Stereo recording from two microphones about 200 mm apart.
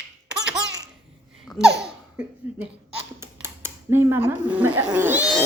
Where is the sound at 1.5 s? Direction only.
5° right (ahead or behind).